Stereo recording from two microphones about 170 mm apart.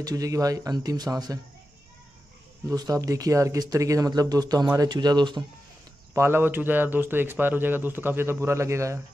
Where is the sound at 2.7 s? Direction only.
20° right (ahead or behind).